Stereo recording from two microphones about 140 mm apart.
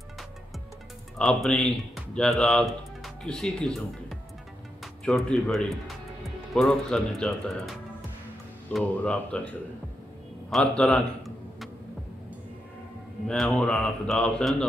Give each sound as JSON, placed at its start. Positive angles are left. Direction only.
{"t": 1.1, "sound": "speech", "side_deg": 5}
{"t": 5.0, "sound": "speech", "side_deg": 0}
{"t": 8.7, "sound": "speech", "side_deg": 10}
{"t": 10.5, "sound": "a sound", "side_deg": 5}
{"t": 13.3, "sound": "speech", "side_deg": 5}